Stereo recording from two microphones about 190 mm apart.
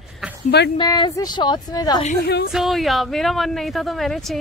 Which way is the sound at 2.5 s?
Centre (ahead or behind).